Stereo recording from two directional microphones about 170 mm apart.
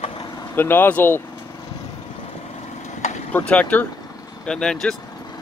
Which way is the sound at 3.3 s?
10° left (ahead or behind).